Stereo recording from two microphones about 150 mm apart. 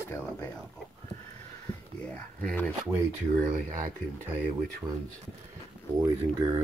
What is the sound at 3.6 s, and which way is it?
Speech, 60° right (ahead or behind).